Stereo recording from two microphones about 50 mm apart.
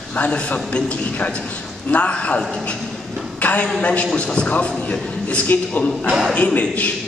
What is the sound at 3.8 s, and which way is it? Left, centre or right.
A man's voice, left.